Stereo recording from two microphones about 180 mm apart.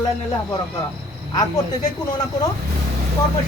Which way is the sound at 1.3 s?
20° left (ahead or behind).